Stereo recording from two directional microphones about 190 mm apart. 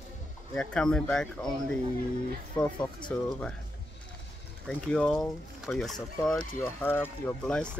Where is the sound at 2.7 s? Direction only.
25° left (ahead or behind).